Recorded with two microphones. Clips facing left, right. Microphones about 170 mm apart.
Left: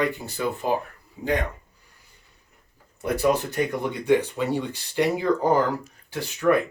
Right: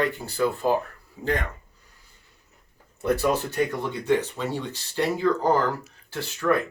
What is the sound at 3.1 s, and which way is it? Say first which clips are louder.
Speech: left 1 dB; 15° left (ahead or behind).